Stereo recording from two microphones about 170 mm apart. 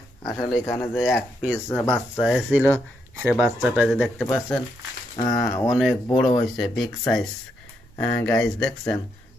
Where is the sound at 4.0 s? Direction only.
10° left (ahead or behind).